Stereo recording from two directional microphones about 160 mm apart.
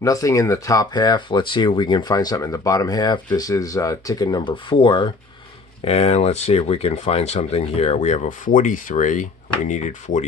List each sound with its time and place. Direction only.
0.0 s speech: 20° left (ahead or behind); by 10.2 s 50° left (ahead or behind)